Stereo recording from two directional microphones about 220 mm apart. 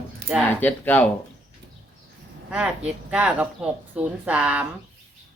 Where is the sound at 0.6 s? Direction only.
5° left (ahead or behind).